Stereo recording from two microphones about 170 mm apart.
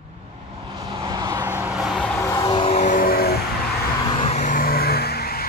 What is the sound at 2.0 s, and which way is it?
Vehicle, 5° left (ahead or behind).